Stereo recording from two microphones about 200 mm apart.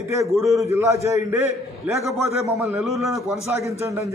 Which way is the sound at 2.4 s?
10° right (ahead or behind).